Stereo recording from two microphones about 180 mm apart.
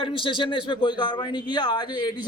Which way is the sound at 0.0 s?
30° left (ahead or behind).